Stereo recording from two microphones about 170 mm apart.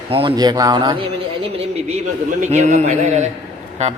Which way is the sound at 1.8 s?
40° right (ahead or behind).